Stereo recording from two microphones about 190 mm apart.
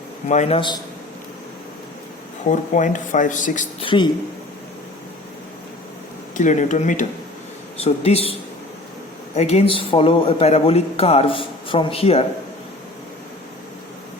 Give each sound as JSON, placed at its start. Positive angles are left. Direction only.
{"t": 0.3, "sound": "speech", "side_deg": 35}
{"t": 2.5, "sound": "speech", "side_deg": 40}
{"t": 3.8, "sound": "a woman's voice", "side_deg": 25}
{"t": 6.3, "sound": "speech", "side_deg": 40}